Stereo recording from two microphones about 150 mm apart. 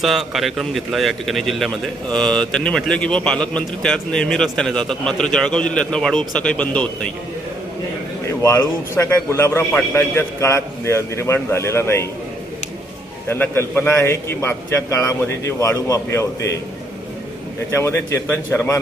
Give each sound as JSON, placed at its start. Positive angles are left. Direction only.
{"t": 0.0, "sound": "a man's voice", "side_deg": 0}
{"t": 8.3, "sound": "a man's voice", "side_deg": 20}
{"t": 13.2, "sound": "a man's voice", "side_deg": 15}
{"t": 17.7, "sound": "a man's voice", "side_deg": 15}